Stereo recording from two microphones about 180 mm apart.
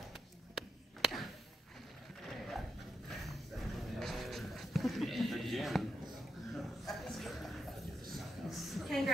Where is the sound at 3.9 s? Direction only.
Centre (ahead or behind).